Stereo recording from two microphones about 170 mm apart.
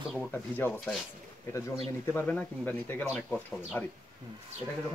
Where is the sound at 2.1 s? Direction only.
15° left (ahead or behind).